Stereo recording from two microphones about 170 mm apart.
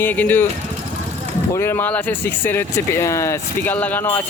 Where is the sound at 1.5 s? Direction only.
15° left (ahead or behind).